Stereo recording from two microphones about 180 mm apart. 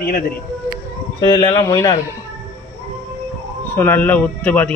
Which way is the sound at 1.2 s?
25° left (ahead or behind).